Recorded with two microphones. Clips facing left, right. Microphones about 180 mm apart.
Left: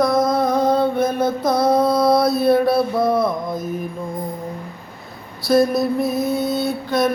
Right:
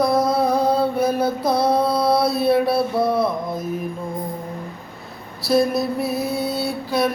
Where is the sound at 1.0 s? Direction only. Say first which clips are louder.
Left 1 dB; 35° right (ahead or behind).